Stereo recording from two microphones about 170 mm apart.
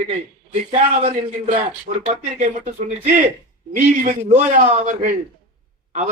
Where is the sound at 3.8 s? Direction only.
50° right (ahead or behind).